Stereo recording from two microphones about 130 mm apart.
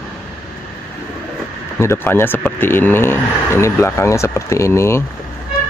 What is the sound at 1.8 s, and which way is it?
Speech, 20° left (ahead or behind).